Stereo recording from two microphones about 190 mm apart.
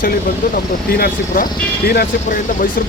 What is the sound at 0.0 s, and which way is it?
Speech, 50° left (ahead or behind).